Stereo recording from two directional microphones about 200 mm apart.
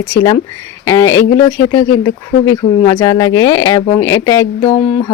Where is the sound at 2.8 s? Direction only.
15° left (ahead or behind).